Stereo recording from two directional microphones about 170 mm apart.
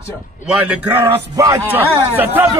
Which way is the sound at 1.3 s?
20° right (ahead or behind).